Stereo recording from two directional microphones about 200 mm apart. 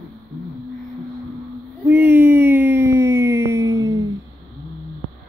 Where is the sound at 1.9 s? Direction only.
10° right (ahead or behind).